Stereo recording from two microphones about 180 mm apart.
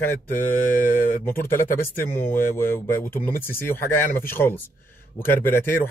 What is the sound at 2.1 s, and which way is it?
Speech, 15° left (ahead or behind).